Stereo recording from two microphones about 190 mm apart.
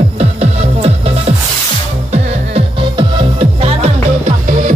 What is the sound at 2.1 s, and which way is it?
Music, 30° right (ahead or behind).